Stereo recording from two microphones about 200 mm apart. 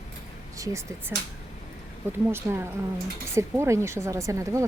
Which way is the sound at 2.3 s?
10° right (ahead or behind).